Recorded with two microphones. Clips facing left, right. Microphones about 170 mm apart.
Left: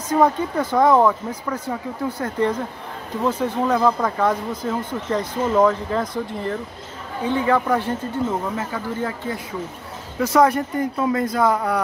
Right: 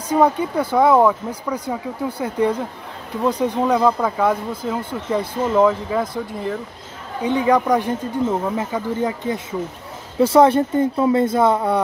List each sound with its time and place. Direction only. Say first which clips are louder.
0.1 s speech: right 1 dB; 10° right (ahead or behind)